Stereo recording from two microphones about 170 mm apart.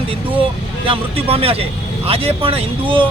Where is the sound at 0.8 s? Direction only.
35° right (ahead or behind).